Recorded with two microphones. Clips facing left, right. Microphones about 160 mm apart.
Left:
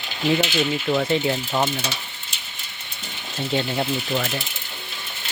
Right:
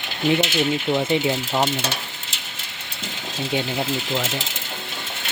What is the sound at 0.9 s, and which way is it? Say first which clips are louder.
Speech: left 1 dB; 20° right (ahead or behind).